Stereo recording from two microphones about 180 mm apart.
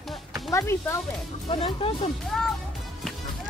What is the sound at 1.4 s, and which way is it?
Speech, 30° left (ahead or behind).